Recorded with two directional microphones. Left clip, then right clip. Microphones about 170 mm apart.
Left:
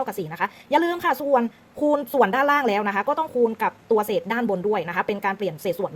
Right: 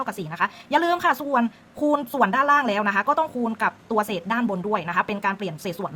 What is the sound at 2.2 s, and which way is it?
Speech, 20° left (ahead or behind).